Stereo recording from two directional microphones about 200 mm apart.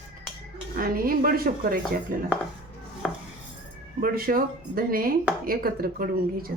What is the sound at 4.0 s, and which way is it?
Speech, 45° right (ahead or behind).